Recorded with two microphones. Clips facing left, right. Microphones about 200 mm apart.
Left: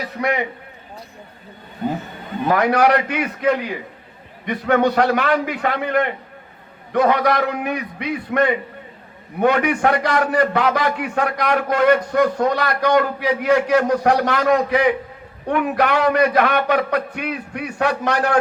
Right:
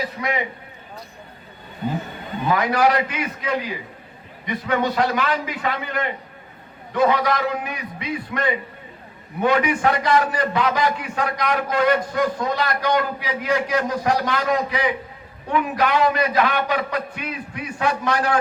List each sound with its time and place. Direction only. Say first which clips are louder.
0.2 s a man's voice: left 6 dB; 60° left (ahead or behind)
2.4 s a man's voice: left 3 dB; 60° left (ahead or behind)